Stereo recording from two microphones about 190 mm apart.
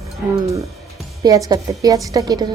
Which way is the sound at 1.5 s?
20° right (ahead or behind).